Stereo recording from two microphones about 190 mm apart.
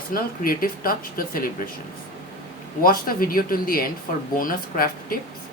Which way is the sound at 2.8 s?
50° left (ahead or behind).